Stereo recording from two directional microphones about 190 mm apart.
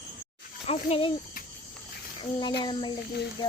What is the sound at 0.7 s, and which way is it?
Speech, 30° left (ahead or behind).